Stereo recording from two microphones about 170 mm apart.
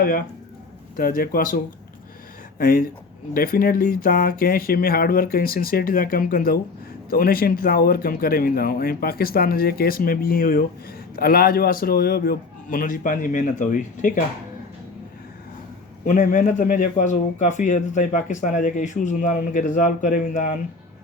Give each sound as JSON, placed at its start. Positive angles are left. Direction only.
{"t": 0.9, "sound": "speech", "side_deg": 55}
{"t": 16.0, "sound": "a man's voice", "side_deg": 50}